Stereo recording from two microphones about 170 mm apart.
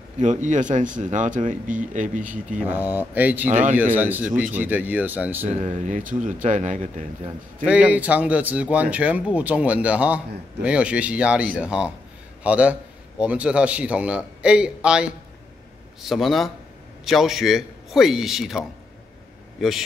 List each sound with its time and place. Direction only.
0.2 s speech: 45° right (ahead or behind)
2.7 s speech: 10° right (ahead or behind)
5.6 s speech: 45° right (ahead or behind)
7.6 s a man's voice: 5° right (ahead or behind)